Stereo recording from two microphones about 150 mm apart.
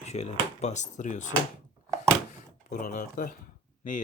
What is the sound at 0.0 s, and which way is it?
Speech, 45° left (ahead or behind).